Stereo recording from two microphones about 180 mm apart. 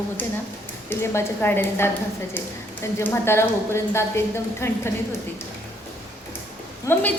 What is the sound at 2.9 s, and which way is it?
A woman's voice, 15° left (ahead or behind).